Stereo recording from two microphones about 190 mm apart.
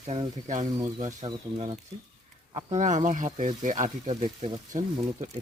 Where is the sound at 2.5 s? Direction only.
40° right (ahead or behind).